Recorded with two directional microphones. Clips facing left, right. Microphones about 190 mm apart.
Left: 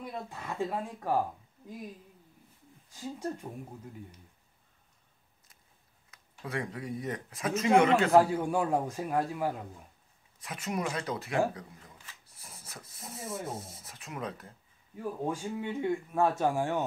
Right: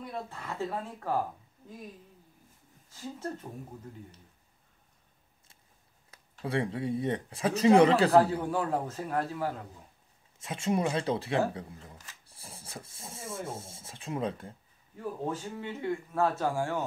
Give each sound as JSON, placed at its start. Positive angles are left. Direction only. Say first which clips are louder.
{"t": 0.3, "sound": "speech", "louder": "left 4 dB", "side_deg": 15}
{"t": 2.9, "sound": "speech", "louder": "left 1 dB", "side_deg": 15}
{"t": 6.0, "sound": "speech", "louder": "right 5 dB", "side_deg": -30}
{"t": 8.1, "sound": "speech", "louder": "even", "side_deg": 15}
{"t": 10.4, "sound": "speech", "louder": "right 5 dB", "side_deg": -25}
{"t": 15.0, "sound": "speech", "louder": "left 1 dB", "side_deg": 15}